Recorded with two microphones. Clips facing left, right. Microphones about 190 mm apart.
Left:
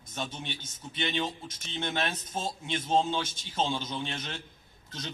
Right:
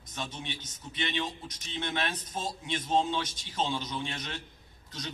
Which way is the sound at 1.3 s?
25° left (ahead or behind).